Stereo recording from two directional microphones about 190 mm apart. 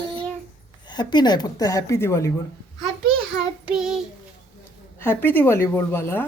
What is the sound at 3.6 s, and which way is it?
Child singing, 5° right (ahead or behind).